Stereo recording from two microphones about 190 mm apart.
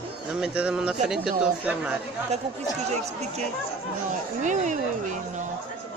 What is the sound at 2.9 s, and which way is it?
Speech, 35° right (ahead or behind).